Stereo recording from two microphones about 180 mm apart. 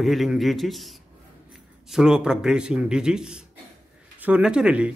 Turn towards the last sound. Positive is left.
turn(degrees=-5)  # may be behind; listen again after turning